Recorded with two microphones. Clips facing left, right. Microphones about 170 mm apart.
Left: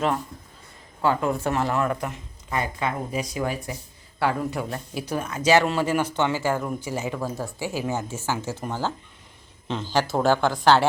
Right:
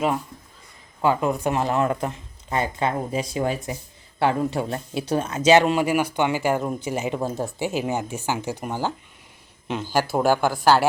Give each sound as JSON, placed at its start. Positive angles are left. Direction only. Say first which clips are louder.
{"t": 1.0, "sound": "speech", "louder": "right 2 dB", "side_deg": -20}